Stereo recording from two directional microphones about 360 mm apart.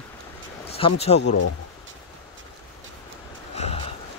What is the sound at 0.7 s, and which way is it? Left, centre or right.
Speech, centre.